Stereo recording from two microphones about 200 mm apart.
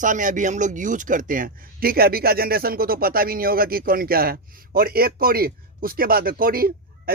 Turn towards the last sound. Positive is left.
turn(degrees=-45)  # may be behind; listen again after turning